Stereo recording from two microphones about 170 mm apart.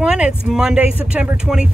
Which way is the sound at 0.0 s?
5° right (ahead or behind).